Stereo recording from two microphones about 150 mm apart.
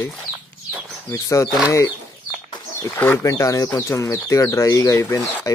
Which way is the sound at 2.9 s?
15° left (ahead or behind).